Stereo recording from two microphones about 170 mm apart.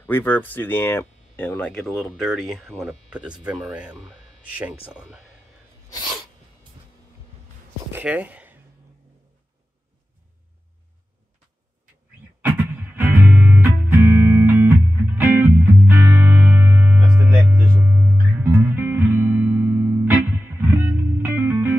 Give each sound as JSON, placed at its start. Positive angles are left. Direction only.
{"t": 0.0, "sound": "speech", "side_deg": 10}
{"t": 5.9, "sound": "sneeze", "side_deg": 25}
{"t": 7.9, "sound": "speech", "side_deg": -10}
{"t": 12.4, "sound": "music", "side_deg": -10}